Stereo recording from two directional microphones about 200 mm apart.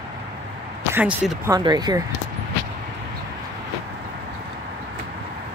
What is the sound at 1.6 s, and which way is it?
Speech, 20° right (ahead or behind).